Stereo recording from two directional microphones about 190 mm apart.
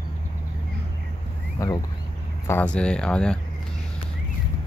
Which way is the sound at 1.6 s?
15° left (ahead or behind).